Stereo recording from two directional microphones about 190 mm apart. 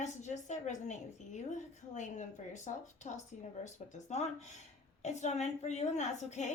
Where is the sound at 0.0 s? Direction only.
40° left (ahead or behind).